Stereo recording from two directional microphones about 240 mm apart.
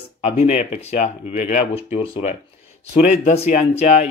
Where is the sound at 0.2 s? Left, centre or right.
Left.